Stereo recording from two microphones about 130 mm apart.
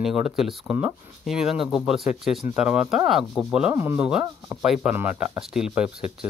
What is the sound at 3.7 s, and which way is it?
Rub, 20° right (ahead or behind).